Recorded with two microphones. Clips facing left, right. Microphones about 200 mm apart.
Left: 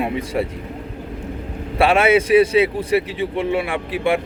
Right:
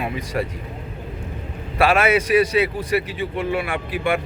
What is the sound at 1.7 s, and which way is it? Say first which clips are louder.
A man's voice: left 3 dB; 30° left (ahead or behind).